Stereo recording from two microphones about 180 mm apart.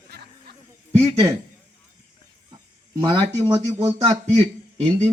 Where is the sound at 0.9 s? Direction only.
20° right (ahead or behind).